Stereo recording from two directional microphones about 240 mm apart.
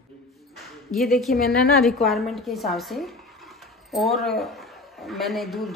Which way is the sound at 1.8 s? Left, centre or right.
Centre.